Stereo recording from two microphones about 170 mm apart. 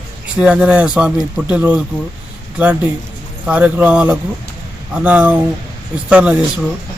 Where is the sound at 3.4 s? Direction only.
10° right (ahead or behind).